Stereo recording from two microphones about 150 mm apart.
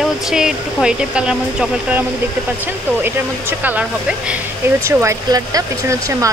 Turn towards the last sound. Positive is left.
turn(degrees=-20)  # may be behind; listen again after turning